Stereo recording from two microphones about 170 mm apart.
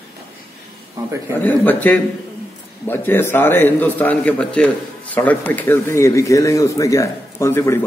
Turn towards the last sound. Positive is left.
turn(degrees=15)  # may be behind; listen again after turning